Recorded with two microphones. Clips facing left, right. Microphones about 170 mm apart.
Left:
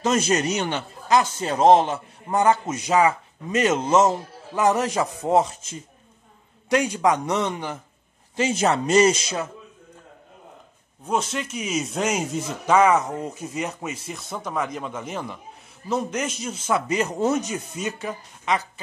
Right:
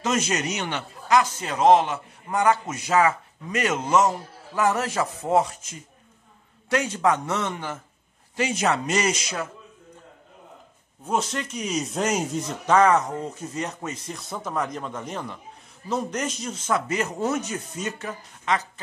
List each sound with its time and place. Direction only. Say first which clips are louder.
0.0 s a man's voice: left 4 dB; 35° left (ahead or behind)
6.7 s speech: left 2 dB; 15° left (ahead or behind)
8.4 s a man's voice: left 2 dB; 30° left (ahead or behind)
11.1 s speech: left 1 dB; centre (ahead or behind)